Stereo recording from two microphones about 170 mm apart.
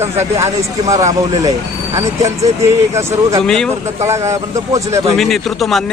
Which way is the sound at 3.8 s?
15° right (ahead or behind).